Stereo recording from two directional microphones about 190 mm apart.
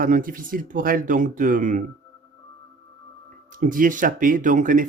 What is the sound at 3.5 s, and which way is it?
Speech, 45° right (ahead or behind).